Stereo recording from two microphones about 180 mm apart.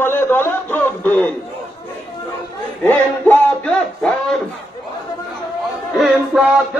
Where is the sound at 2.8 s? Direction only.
10° left (ahead or behind).